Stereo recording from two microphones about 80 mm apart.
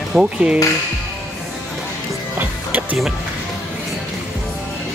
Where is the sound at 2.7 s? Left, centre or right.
Right.